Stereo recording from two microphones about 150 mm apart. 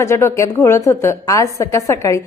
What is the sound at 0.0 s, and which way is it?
A woman's voice, 20° left (ahead or behind).